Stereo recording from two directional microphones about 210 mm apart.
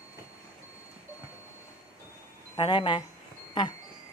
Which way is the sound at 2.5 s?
25° left (ahead or behind).